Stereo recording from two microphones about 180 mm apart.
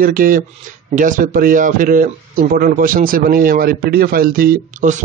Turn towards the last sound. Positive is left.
turn(degrees=-45)  # may be behind; listen again after turning